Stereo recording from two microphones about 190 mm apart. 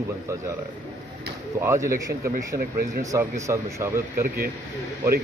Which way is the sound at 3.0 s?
15° right (ahead or behind).